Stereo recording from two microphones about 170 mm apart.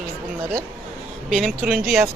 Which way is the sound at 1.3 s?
5° right (ahead or behind).